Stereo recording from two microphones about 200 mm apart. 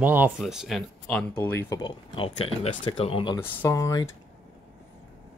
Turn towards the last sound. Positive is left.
turn(degrees=15)  # may be behind; listen again after turning